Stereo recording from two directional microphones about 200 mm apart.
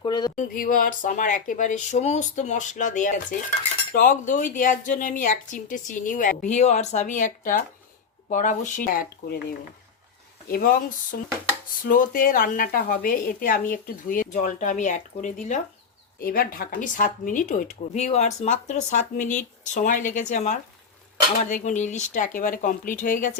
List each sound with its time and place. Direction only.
0.0 s speech: 20° left (ahead or behind)
0.3 s speech: 45° left (ahead or behind)